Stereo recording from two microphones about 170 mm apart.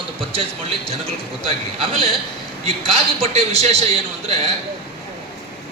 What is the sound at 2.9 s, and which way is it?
A man's voice, 35° right (ahead or behind).